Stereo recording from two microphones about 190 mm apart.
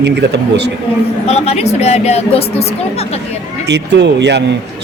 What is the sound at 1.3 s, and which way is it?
A woman's voice, 35° left (ahead or behind).